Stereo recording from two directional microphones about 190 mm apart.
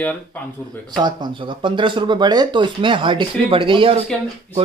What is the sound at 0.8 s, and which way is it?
Speech, 20° right (ahead or behind).